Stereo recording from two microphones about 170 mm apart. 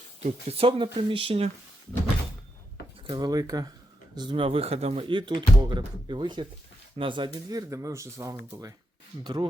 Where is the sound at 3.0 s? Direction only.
25° right (ahead or behind).